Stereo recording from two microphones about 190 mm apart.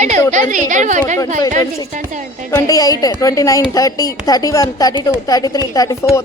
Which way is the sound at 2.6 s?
20° left (ahead or behind).